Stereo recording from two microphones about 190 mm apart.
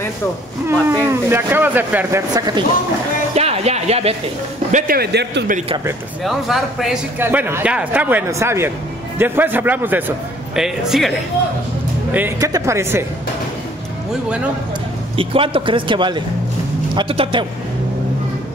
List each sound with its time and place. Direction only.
0.7 s a man's voice: 10° right (ahead or behind)
2.3 s speech: 20° right (ahead or behind)
3.3 s music: 35° right (ahead or behind)
4.7 s a man's voice: 50° right (ahead or behind)
6.2 s a man's voice: centre (ahead or behind)
12.1 s a man's voice: 15° right (ahead or behind)
15.1 s speech: 30° right (ahead or behind)